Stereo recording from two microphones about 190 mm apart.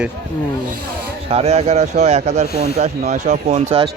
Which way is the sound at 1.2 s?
35° right (ahead or behind).